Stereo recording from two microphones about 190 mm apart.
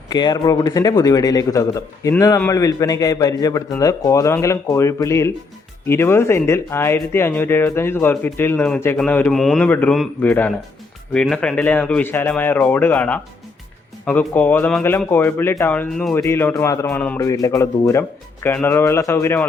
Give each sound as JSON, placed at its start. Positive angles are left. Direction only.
{"t": 0.1, "sound": "a man's voice", "side_deg": 20}